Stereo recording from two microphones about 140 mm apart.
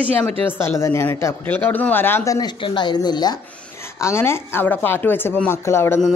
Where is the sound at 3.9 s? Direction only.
20° left (ahead or behind).